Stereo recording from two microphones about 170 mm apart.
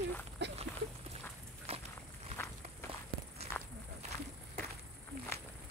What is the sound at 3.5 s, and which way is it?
Walk, 10° left (ahead or behind).